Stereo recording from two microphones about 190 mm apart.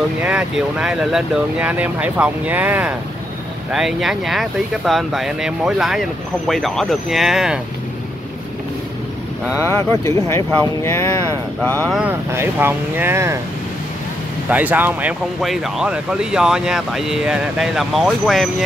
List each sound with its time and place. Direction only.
0.2 s speech: 5° right (ahead or behind)
9.6 s speech: 15° left (ahead or behind)
12.0 s speech: 10° right (ahead or behind)
14.5 s speech: 10° right (ahead or behind)